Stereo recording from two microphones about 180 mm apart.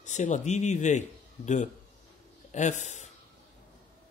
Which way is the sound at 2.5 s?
40° left (ahead or behind).